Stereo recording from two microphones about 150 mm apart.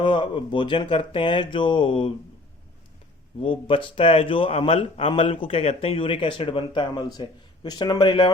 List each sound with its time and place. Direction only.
0.0 s a man's voice: 30° left (ahead or behind)
3.4 s a man's voice: 35° left (ahead or behind)